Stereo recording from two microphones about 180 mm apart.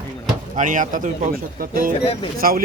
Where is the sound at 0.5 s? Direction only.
45° right (ahead or behind).